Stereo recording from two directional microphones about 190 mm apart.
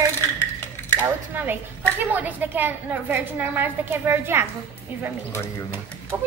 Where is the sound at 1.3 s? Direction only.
10° right (ahead or behind).